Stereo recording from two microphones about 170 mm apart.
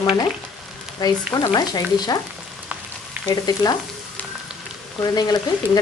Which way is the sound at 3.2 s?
25° left (ahead or behind).